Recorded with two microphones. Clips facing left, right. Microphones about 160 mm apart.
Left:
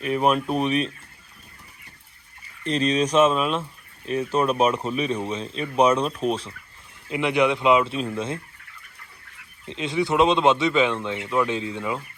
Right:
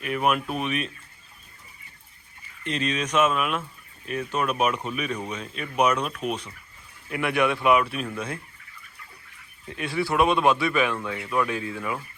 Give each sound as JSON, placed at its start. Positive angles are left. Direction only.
{"t": 0.0, "sound": "speech", "side_deg": 30}
{"t": 2.6, "sound": "speech", "side_deg": 35}
{"t": 7.1, "sound": "speech", "side_deg": 20}
{"t": 9.6, "sound": "speech", "side_deg": 20}